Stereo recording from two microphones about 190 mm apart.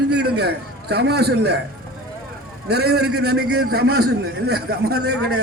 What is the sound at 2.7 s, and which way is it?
A man's voice, 55° right (ahead or behind).